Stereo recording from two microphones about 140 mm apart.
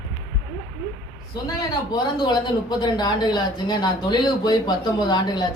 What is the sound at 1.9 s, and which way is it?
Speech, 30° left (ahead or behind).